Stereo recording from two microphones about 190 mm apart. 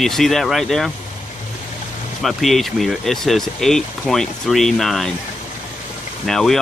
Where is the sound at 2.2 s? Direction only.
Centre (ahead or behind).